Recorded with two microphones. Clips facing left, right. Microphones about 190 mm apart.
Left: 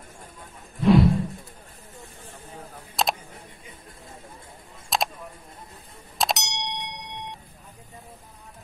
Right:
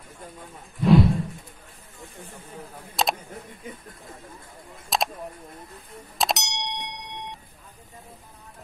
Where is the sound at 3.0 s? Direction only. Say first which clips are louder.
Even; centre (ahead or behind).